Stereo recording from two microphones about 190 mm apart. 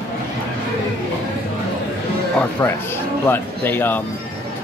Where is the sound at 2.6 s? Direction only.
20° left (ahead or behind).